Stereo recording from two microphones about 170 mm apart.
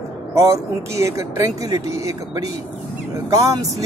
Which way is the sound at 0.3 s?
15° right (ahead or behind).